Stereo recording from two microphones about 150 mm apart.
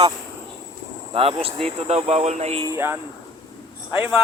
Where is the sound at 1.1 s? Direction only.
40° right (ahead or behind).